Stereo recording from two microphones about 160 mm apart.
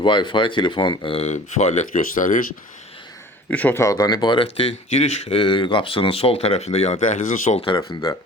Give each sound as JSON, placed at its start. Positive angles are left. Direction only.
{"t": 0.0, "sound": "speech", "side_deg": 30}
{"t": 3.5, "sound": "speech", "side_deg": 10}
{"t": 7.6, "sound": "speech", "side_deg": 35}